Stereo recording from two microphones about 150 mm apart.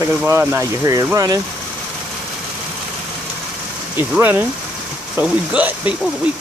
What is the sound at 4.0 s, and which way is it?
Speech, 15° right (ahead or behind).